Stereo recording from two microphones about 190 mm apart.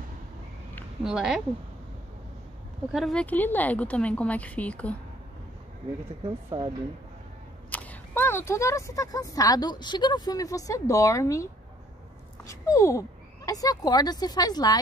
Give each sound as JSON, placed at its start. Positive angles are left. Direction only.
{"t": 1.0, "sound": "a woman's voice", "side_deg": -5}
{"t": 2.9, "sound": "speech", "side_deg": 0}
{"t": 6.5, "sound": "speech", "side_deg": -30}
{"t": 7.7, "sound": "speech", "side_deg": 10}